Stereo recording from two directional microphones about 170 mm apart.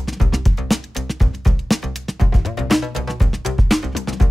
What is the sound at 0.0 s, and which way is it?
Music, centre (ahead or behind).